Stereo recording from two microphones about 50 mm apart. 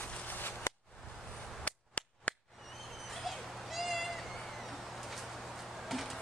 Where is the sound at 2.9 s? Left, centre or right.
Centre.